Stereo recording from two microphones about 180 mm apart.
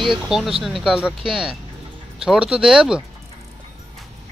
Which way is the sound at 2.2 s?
5° right (ahead or behind).